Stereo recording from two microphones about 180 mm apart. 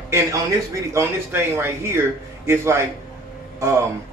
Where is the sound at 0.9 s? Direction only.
15° right (ahead or behind).